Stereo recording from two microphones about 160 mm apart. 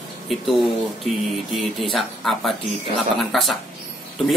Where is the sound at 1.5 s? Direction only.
Centre (ahead or behind).